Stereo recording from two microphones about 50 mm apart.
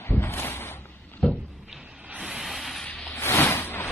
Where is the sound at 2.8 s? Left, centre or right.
Left.